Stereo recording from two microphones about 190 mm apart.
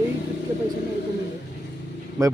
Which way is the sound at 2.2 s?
15° right (ahead or behind).